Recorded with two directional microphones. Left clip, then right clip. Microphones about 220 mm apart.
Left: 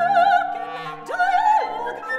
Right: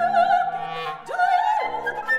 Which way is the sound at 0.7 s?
25° right (ahead or behind).